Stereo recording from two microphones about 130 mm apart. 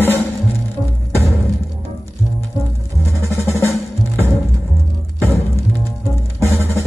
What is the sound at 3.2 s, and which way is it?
Drum, 20° left (ahead or behind).